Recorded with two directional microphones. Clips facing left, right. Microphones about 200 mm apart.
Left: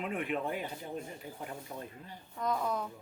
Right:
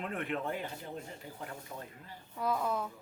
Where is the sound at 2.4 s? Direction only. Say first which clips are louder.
Even; 5° right (ahead or behind).